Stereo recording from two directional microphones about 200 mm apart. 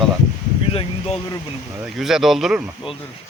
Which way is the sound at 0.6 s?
30° left (ahead or behind).